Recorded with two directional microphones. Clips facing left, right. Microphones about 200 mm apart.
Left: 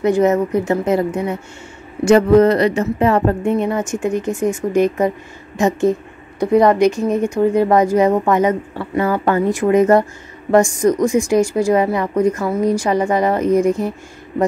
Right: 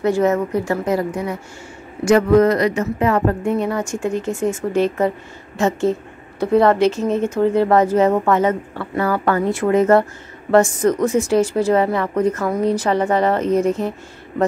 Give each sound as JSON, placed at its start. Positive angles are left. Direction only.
{"t": 0.0, "sound": "speech", "side_deg": 20}